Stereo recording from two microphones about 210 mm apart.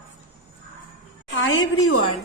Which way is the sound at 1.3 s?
70° left (ahead or behind).